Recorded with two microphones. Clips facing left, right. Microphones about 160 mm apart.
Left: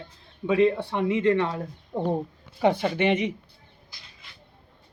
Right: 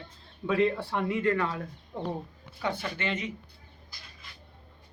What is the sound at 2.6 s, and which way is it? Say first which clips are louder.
Speech: left 10 dB; 70° left (ahead or behind).